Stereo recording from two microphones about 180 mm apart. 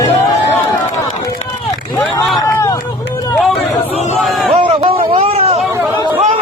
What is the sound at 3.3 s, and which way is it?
Speech, centre (ahead or behind).